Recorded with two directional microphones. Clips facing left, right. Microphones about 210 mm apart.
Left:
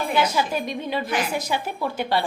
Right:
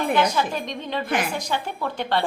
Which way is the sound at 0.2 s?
10° left (ahead or behind).